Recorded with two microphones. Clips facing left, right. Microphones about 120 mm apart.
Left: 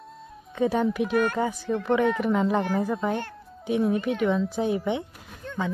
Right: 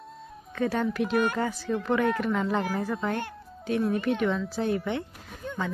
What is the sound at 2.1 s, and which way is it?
Speech, 15° left (ahead or behind).